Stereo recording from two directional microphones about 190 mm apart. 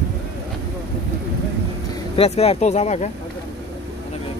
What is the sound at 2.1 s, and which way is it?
Speech, 30° left (ahead or behind).